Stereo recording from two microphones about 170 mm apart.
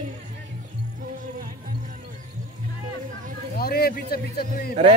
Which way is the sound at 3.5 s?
65° left (ahead or behind).